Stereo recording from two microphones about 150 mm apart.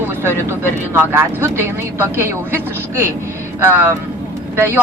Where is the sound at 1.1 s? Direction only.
15° right (ahead or behind).